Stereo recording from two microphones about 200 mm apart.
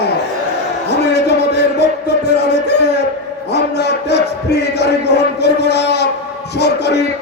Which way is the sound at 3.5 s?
55° left (ahead or behind).